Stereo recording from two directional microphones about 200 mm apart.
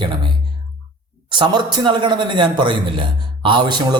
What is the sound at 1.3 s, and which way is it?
Speech, 20° right (ahead or behind).